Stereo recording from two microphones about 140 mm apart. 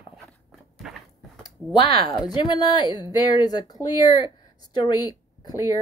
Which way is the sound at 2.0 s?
30° left (ahead or behind).